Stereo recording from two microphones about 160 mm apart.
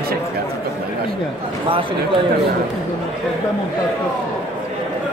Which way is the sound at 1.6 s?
35° right (ahead or behind).